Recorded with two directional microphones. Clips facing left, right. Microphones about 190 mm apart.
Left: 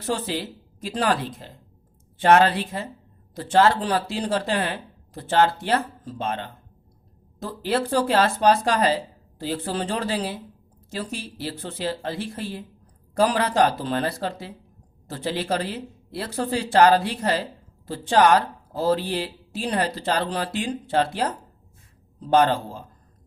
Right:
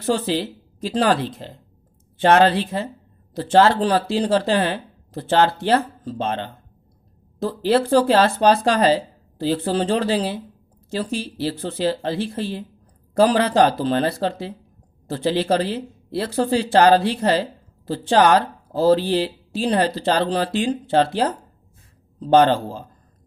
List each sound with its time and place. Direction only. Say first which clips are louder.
0.0 s speech: right 6 dB; 30° right (ahead or behind)